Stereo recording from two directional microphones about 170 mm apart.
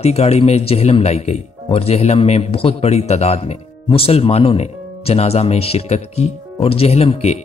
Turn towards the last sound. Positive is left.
turn(degrees=40)  # may be behind; listen again after turning